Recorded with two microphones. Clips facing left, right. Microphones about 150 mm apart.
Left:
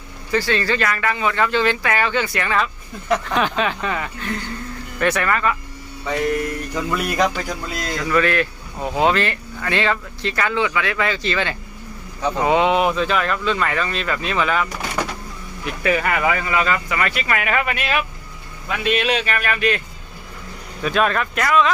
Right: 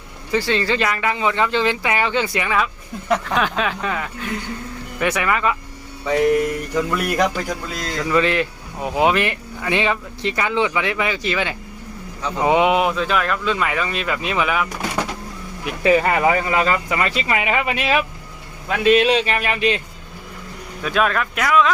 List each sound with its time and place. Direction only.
0.3 s speech: 20° right (ahead or behind)
3.3 s speech: centre (ahead or behind)
8.1 s speech: 20° right (ahead or behind)
15.8 s speech: 30° right (ahead or behind)
20.8 s speech: centre (ahead or behind)